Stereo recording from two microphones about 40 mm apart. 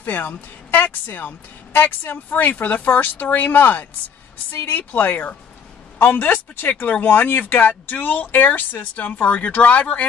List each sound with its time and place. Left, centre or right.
0.0 s speech: left
5.9 s a man's voice: left
6.7 s speech: left